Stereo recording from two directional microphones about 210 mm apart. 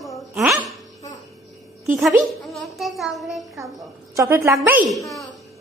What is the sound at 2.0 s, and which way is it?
A child's voice, centre (ahead or behind).